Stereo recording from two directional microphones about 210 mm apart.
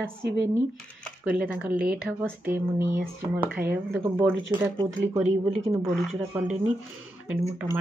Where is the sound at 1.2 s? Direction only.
5° right (ahead or behind).